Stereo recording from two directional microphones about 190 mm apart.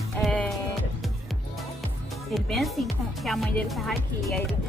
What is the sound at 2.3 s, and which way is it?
Speech, centre (ahead or behind).